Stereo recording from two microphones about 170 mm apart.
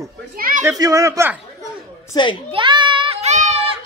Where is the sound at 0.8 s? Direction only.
20° right (ahead or behind).